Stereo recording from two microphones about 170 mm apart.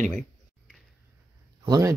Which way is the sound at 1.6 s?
20° right (ahead or behind).